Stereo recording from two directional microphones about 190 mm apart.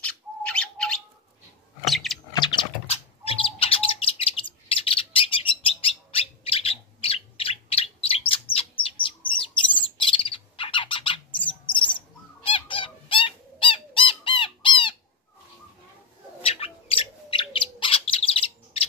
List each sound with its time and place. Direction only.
0.0 s bird: 5° left (ahead or behind)
1.9 s a sound: centre (ahead or behind)
2.3 s bird: 25° left (ahead or behind)
12.4 s bird: 30° left (ahead or behind)
16.4 s bird: 30° left (ahead or behind)